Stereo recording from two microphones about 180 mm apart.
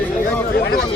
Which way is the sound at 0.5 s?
60° left (ahead or behind).